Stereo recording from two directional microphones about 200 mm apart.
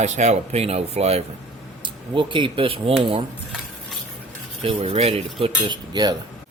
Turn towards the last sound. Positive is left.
turn(degrees=-20)  # may be behind; listen again after turning